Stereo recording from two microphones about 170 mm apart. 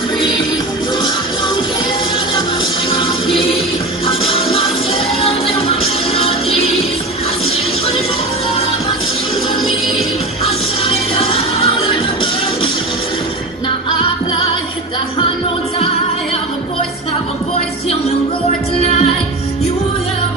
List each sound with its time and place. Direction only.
4.0 s music: 30° left (ahead or behind)
10.8 s music: 35° left (ahead or behind)